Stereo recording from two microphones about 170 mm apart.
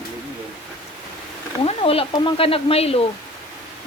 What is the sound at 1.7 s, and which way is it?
Speech, 35° left (ahead or behind).